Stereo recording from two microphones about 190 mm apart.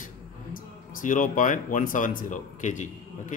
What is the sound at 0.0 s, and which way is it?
Speech, 45° left (ahead or behind).